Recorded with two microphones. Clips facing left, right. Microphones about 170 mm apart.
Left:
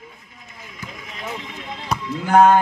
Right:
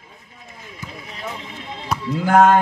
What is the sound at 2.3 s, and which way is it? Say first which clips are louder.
Speech: even; centre (ahead or behind).